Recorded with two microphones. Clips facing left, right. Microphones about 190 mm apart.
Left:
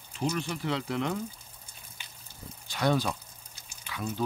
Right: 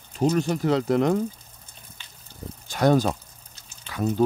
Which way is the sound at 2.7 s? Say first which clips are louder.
Right 7 dB; 45° right (ahead or behind).